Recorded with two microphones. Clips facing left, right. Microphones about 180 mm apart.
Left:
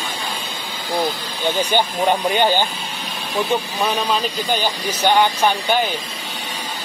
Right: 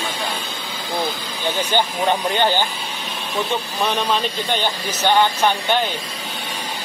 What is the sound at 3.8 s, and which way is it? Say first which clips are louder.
Speech: even; centre (ahead or behind).